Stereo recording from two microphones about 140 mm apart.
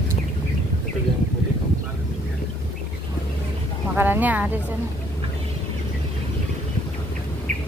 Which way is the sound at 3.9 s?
15° right (ahead or behind).